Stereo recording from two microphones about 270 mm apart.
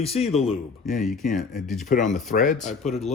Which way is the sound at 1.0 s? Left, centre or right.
Centre.